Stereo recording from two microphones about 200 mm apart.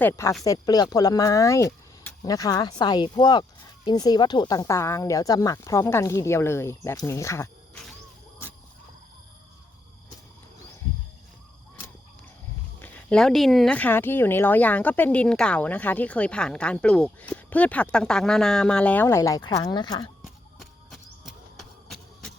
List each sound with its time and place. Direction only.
0.0 s speech: 15° left (ahead or behind)
12.8 s speech: 5° left (ahead or behind)
20.2 s a sound: centre (ahead or behind)